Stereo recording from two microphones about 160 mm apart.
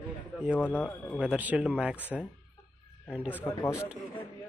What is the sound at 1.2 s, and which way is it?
Speech, 10° right (ahead or behind).